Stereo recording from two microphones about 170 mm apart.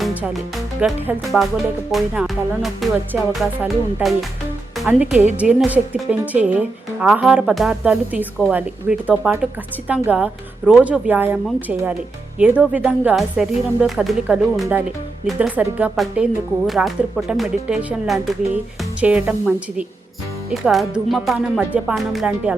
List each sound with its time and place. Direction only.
0.0 s music: 5° right (ahead or behind)
1.9 s speech: centre (ahead or behind)
12.4 s speech: 10° right (ahead or behind)